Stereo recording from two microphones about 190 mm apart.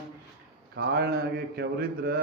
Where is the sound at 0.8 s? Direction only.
60° right (ahead or behind).